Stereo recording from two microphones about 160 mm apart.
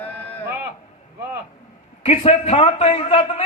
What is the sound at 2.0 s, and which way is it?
A man's voice, 40° left (ahead or behind).